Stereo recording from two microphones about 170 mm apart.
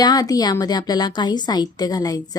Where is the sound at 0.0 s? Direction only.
25° left (ahead or behind).